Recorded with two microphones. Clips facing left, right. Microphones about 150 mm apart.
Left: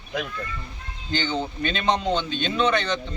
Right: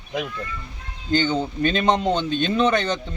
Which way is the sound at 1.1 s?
45° right (ahead or behind).